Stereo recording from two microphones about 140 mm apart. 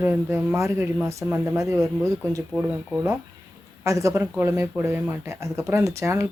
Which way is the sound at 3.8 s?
20° right (ahead or behind).